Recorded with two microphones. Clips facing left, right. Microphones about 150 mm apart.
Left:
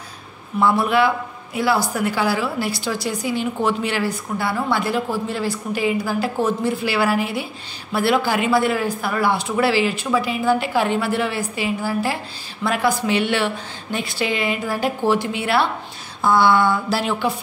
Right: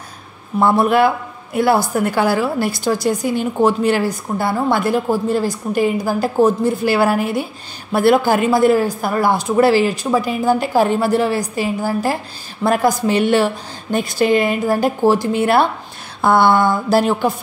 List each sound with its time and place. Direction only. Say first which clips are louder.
0.6 s a woman's voice: right 4 dB; 45° right (ahead or behind)